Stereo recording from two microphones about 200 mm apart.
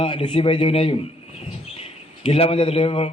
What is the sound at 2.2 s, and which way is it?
Speech, 30° left (ahead or behind).